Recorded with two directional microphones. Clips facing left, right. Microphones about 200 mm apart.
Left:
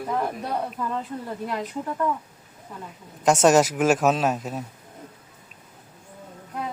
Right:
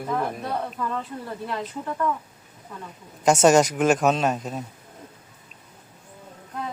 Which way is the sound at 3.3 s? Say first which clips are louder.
Right 1 dB; centre (ahead or behind).